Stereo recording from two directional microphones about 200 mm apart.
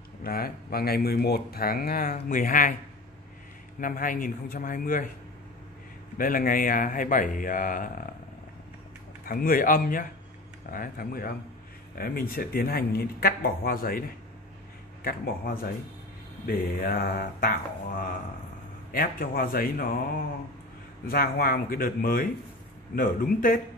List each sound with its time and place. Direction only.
0.2 s speech: 50° left (ahead or behind)
3.8 s speech: 45° left (ahead or behind)
6.1 s speech: 45° left (ahead or behind)
9.2 s speech: 45° left (ahead or behind)
15.0 s speech: 45° left (ahead or behind)
21.1 s speech: 45° left (ahead or behind)